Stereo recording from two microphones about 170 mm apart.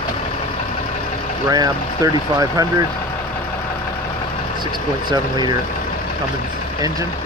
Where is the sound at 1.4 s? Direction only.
20° right (ahead or behind).